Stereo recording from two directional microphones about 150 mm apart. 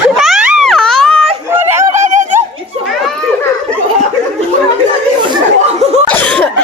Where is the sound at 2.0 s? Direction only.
55° right (ahead or behind).